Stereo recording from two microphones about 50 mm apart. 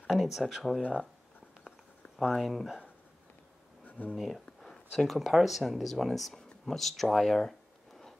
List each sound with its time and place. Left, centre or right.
0.0 s speech: centre
2.1 s speech: centre
3.8 s a sound: left
4.1 s speech: centre